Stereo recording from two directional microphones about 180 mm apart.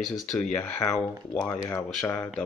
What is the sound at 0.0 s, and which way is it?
Speech, centre (ahead or behind).